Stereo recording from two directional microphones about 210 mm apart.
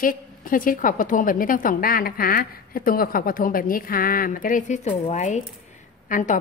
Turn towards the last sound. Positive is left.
turn(degrees=40)  # may be behind; listen again after turning